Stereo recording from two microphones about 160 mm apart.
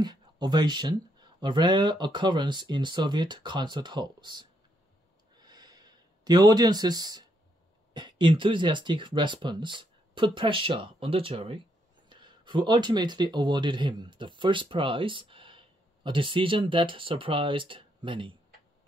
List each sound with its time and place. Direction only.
0.0 s speech: 25° right (ahead or behind)
5.4 s a sound: 25° right (ahead or behind)
7.9 s speech: 30° right (ahead or behind)